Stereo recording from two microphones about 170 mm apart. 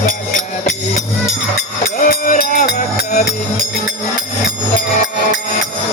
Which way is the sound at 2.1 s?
60° left (ahead or behind).